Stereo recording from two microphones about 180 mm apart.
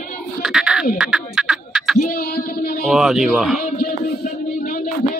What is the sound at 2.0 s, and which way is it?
Music, 50° left (ahead or behind).